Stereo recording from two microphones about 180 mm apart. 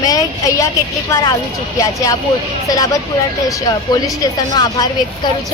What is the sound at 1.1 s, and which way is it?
Speech, 15° left (ahead or behind).